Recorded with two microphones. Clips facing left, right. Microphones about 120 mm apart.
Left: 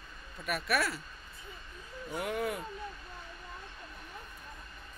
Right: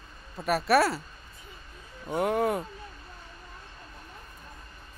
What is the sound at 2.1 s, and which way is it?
Speech, 40° right (ahead or behind).